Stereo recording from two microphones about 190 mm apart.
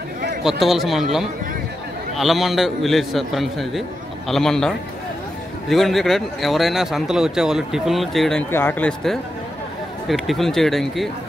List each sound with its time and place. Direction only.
0.4 s speech: centre (ahead or behind)